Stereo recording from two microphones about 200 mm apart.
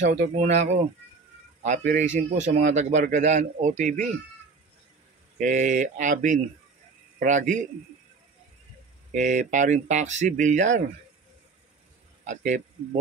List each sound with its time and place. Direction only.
0.2 s a man's voice: 35° right (ahead or behind)
5.4 s a man's voice: 40° right (ahead or behind)
9.1 s a man's voice: 40° right (ahead or behind)
12.3 s a man's voice: 35° right (ahead or behind)